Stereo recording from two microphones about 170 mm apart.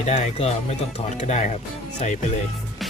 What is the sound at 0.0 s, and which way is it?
Speech, 40° left (ahead or behind).